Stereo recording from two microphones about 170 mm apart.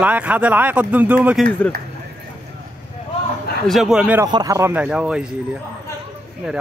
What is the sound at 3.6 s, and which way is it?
Speech, centre (ahead or behind).